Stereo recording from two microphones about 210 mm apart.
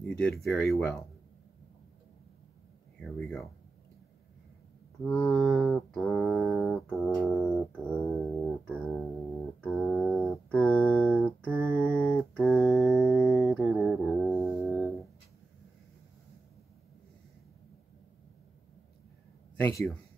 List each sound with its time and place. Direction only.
0.0 s mantra: 5° left (ahead or behind)
3.0 s mantra: centre (ahead or behind)
5.0 s mantra: centre (ahead or behind)
7.0 s a sound: 10° left (ahead or behind)
12.6 s mantra: centre (ahead or behind)
19.5 s speech: 5° left (ahead or behind)